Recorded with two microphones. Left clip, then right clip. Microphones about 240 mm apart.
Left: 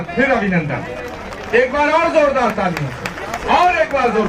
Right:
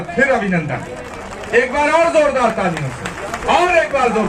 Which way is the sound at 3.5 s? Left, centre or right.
Right.